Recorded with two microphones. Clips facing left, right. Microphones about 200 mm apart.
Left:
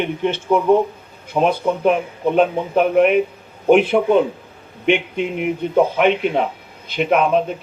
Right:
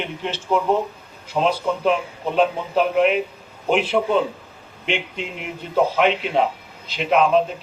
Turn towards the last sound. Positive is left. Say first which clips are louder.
# left 1 dB
turn(degrees=55)  # may be behind; listen again after turning